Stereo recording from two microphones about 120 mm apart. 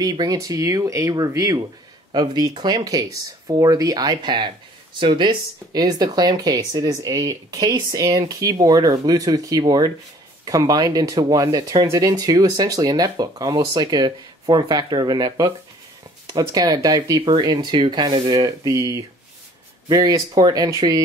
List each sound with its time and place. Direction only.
0.0 s speech: 35° right (ahead or behind)